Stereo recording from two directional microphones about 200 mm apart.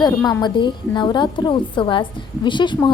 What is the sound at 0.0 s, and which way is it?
A woman's voice, 15° left (ahead or behind).